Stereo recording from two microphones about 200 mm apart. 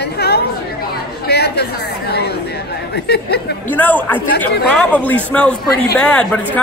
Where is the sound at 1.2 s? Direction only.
55° left (ahead or behind).